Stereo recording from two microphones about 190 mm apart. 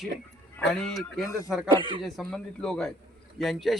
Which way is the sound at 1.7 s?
25° right (ahead or behind).